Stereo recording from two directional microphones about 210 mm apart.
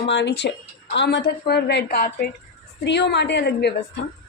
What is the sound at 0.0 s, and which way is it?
A woman's voice, 55° left (ahead or behind).